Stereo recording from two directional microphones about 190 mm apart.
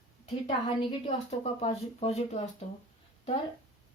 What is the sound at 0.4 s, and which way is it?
A woman's voice, 30° left (ahead or behind).